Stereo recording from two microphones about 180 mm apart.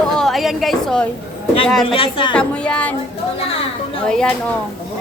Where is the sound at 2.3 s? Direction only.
5° left (ahead or behind).